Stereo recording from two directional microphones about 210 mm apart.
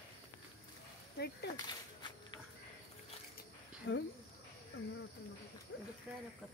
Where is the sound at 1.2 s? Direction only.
50° left (ahead or behind).